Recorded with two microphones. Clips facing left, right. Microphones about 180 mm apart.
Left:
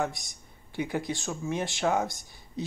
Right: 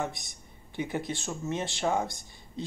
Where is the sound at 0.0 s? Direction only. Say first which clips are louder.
Left 3 dB; centre (ahead or behind).